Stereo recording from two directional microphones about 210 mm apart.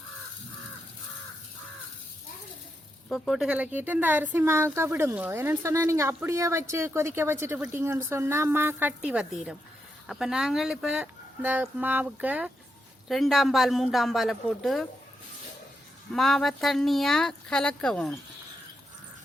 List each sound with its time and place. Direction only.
3.1 s speech: centre (ahead or behind)
16.1 s speech: centre (ahead or behind)